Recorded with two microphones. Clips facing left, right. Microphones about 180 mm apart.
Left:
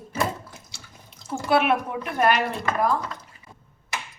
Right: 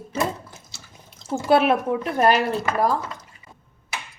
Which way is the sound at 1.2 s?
30° right (ahead or behind).